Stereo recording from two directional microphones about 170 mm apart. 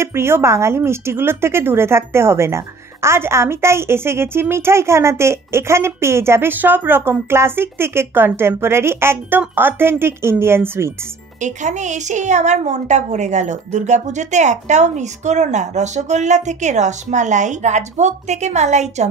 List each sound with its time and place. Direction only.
0.0 s speech: 15° right (ahead or behind)
11.4 s a woman's voice: 45° right (ahead or behind)